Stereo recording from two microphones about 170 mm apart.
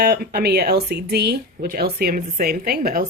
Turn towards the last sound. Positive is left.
turn(degrees=-60)  # may be behind; listen again after turning